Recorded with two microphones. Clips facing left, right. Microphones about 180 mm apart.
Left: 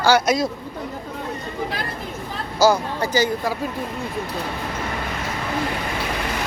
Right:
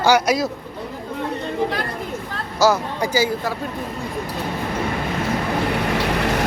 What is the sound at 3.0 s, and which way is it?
Speech, 10° right (ahead or behind).